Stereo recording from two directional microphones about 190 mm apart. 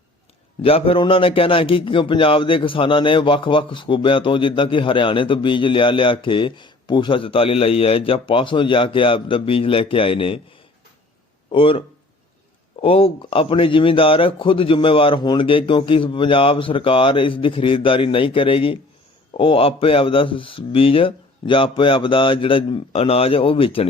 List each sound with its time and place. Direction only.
0.6 s a man's voice: 30° left (ahead or behind)
11.5 s a man's voice: 30° left (ahead or behind)
12.8 s a man's voice: 30° left (ahead or behind)